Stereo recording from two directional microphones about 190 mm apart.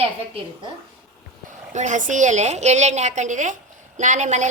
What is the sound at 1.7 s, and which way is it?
A woman's voice, 40° right (ahead or behind).